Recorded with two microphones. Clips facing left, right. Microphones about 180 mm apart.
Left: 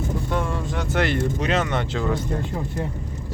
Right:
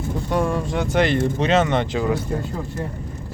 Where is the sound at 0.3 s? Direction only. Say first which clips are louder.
Right 4 dB; 20° right (ahead or behind).